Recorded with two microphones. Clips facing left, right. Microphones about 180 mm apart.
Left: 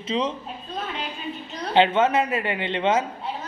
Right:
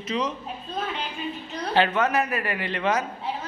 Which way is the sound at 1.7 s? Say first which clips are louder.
Left 3 dB; 25° left (ahead or behind).